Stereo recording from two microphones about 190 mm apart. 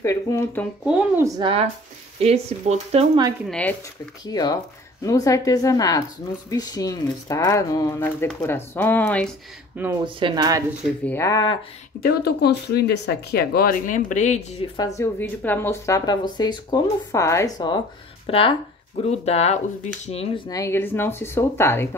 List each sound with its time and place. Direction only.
0.0 s speech: 15° left (ahead or behind)
0.8 s speech: 5° right (ahead or behind)
1.2 s speech: 30° right (ahead or behind)
3.4 s speech: 5° left (ahead or behind)
4.2 s speech: 20° left (ahead or behind)
10.0 s speech: 25° right (ahead or behind)
11.1 s speech: 15° left (ahead or behind)
12.0 s speech: 55° left (ahead or behind); by 14.4 s 40° left (ahead or behind)
14.8 s speech: 15° left (ahead or behind); by 20.4 s 30° left (ahead or behind)
20.4 s speech: 15° left (ahead or behind)